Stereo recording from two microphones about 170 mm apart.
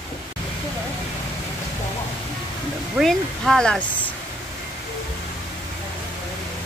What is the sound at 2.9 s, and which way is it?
Speech, centre (ahead or behind).